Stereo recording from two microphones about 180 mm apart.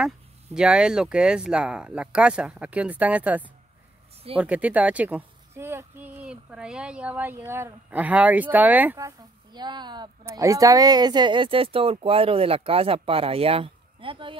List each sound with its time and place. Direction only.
0.6 s speech: 5° right (ahead or behind); by 14.3 s 30° right (ahead or behind)